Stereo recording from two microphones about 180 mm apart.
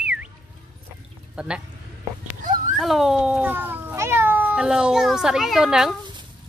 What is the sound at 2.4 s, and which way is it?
Children playing, 50° right (ahead or behind).